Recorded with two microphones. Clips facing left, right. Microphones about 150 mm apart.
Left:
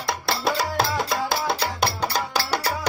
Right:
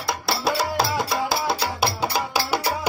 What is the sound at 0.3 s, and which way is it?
Music, centre (ahead or behind).